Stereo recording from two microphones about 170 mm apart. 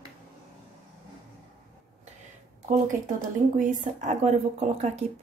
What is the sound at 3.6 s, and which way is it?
Speech, 45° right (ahead or behind).